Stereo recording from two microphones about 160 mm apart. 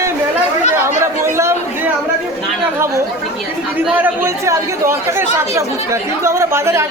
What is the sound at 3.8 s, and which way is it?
Speech, 15° right (ahead or behind).